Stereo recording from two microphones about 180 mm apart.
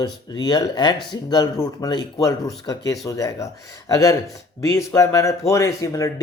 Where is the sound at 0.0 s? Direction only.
25° left (ahead or behind).